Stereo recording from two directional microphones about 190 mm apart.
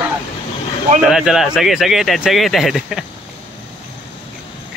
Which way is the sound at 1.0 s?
5° right (ahead or behind).